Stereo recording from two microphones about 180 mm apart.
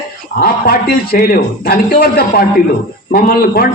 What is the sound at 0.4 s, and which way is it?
A man's voice, 55° left (ahead or behind).